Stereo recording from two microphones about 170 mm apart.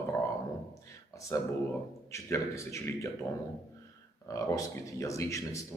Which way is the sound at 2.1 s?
15° left (ahead or behind).